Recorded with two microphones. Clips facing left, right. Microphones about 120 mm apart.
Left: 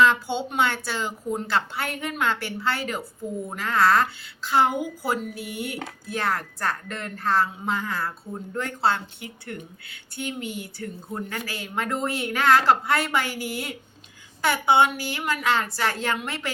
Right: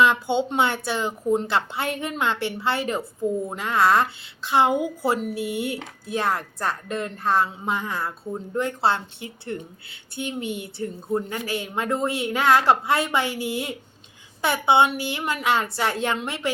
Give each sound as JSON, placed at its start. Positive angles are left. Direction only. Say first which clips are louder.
{"t": 0.0, "sound": "a woman's voice", "louder": "right 1 dB", "side_deg": -20}